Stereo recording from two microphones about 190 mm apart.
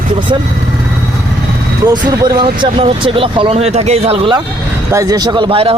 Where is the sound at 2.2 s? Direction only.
25° right (ahead or behind).